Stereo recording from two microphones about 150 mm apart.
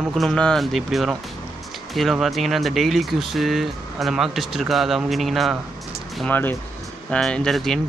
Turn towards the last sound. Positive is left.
turn(degrees=0)  # may be behind; listen again after turning